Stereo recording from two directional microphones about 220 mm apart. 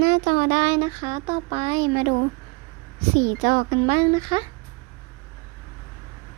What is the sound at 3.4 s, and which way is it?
Speech, 35° right (ahead or behind).